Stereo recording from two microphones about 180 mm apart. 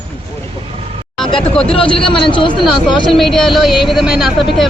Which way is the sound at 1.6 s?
30° left (ahead or behind).